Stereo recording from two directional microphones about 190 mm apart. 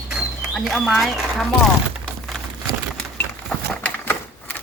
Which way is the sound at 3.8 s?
10° left (ahead or behind).